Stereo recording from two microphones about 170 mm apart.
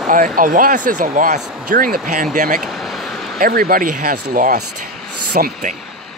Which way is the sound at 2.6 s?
Centre (ahead or behind).